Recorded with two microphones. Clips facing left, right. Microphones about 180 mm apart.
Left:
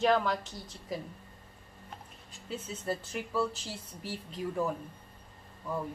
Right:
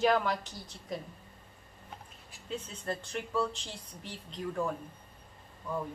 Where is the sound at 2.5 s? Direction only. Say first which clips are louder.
Left 2 dB; 5° left (ahead or behind).